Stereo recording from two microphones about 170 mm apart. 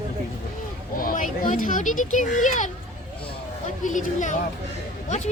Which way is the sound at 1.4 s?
50° left (ahead or behind).